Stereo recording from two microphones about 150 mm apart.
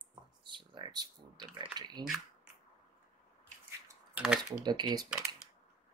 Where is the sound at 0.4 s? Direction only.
30° right (ahead or behind).